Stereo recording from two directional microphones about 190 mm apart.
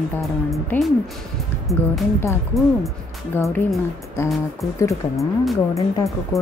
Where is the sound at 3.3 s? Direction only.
10° left (ahead or behind).